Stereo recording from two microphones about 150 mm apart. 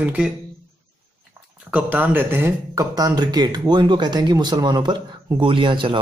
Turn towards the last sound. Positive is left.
turn(degrees=-35)  # may be behind; listen again after turning